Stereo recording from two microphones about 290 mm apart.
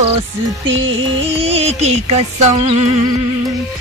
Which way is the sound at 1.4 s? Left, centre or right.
Right.